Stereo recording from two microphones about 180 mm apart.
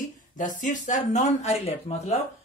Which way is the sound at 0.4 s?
45° left (ahead or behind).